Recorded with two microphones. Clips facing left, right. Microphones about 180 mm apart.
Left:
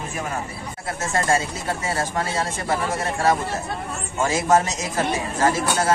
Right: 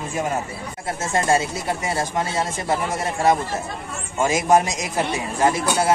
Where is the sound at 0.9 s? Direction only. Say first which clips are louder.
Right 2 dB; 20° right (ahead or behind).